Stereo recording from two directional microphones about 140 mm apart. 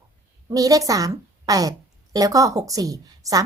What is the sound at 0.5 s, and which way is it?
Speech, 25° right (ahead or behind).